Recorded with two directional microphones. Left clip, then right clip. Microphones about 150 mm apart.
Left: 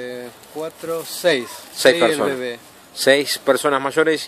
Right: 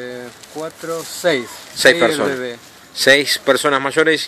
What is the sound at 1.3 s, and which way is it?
Speech, 5° left (ahead or behind).